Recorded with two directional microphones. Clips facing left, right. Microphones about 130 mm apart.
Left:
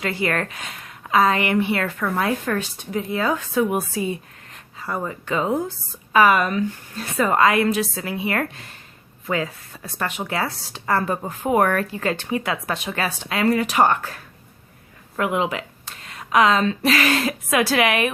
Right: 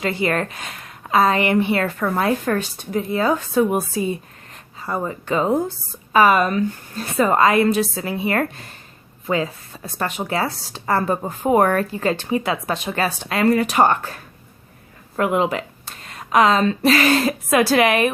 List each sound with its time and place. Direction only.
0.0 s speech: 25° right (ahead or behind)
9.2 s a woman's voice: 25° right (ahead or behind)